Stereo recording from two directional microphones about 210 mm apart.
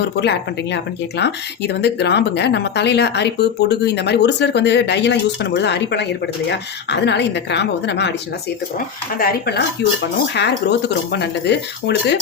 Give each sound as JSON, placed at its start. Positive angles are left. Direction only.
{"t": 0.2, "sound": "a woman's voice", "side_deg": 55}
{"t": 9.1, "sound": "speech", "side_deg": 45}